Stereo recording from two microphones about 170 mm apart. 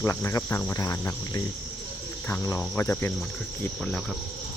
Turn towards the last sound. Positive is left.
turn(degrees=15)  # may be behind; listen again after turning